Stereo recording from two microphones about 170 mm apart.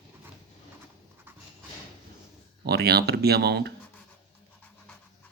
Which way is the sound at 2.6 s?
70° right (ahead or behind).